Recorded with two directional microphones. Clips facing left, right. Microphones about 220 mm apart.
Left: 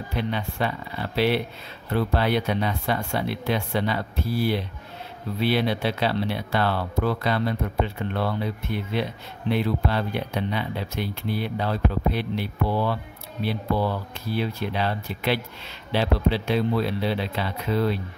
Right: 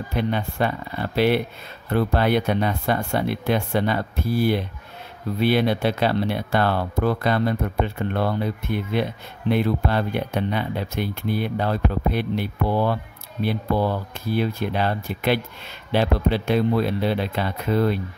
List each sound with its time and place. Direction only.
0.1 s speech: 50° right (ahead or behind)